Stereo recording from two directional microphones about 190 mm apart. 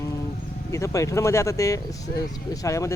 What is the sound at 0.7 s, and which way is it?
Speech, 15° left (ahead or behind).